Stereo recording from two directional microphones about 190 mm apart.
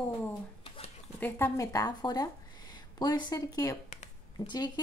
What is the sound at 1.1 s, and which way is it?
A woman's voice, 10° left (ahead or behind).